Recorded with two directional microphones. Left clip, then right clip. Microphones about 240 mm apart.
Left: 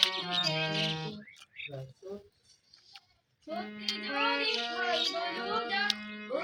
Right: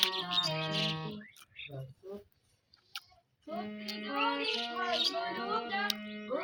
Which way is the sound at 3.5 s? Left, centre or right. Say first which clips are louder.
Left 4 dB; left.